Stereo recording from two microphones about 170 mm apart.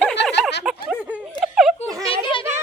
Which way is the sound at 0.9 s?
5° right (ahead or behind).